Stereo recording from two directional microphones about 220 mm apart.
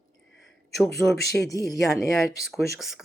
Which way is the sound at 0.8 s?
Centre (ahead or behind).